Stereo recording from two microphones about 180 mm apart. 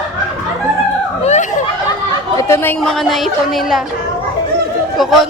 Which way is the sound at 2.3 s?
15° left (ahead or behind).